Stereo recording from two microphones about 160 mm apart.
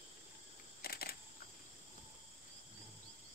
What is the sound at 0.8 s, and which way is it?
Camera, 70° left (ahead or behind).